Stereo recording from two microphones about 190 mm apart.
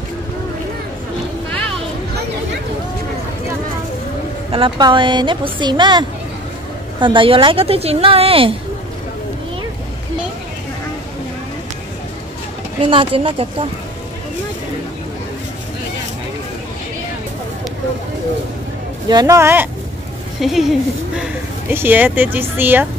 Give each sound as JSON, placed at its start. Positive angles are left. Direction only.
{"t": 4.5, "sound": "a woman's voice", "side_deg": -25}
{"t": 12.8, "sound": "a woman's voice", "side_deg": -30}
{"t": 19.0, "sound": "speech", "side_deg": -20}
{"t": 20.3, "sound": "speech", "side_deg": 0}